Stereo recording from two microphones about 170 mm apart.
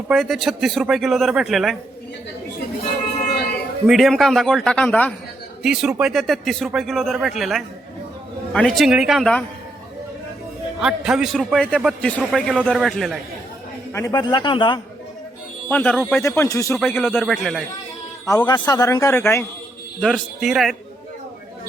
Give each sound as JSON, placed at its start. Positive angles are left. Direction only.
{"t": 0.1, "sound": "a man's voice", "side_deg": 0}
{"t": 3.8, "sound": "a man's voice", "side_deg": 0}
{"t": 5.6, "sound": "a man's voice", "side_deg": -5}
{"t": 10.8, "sound": "a man's voice", "side_deg": -5}
{"t": 13.9, "sound": "speech", "side_deg": 20}
{"t": 15.7, "sound": "speech", "side_deg": 10}
{"t": 16.7, "sound": "a man's voice", "side_deg": 5}
{"t": 18.3, "sound": "speech", "side_deg": 25}
{"t": 20.0, "sound": "a man's voice", "side_deg": 0}